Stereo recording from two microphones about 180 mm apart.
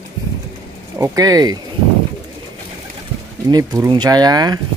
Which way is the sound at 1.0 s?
20° right (ahead or behind).